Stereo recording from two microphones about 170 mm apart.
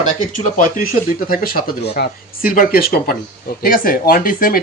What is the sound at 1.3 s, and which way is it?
Speech, 60° left (ahead or behind).